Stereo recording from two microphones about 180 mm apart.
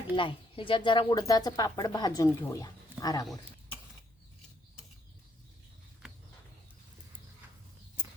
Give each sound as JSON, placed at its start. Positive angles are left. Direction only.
{"t": 0.2, "sound": "speech", "side_deg": 30}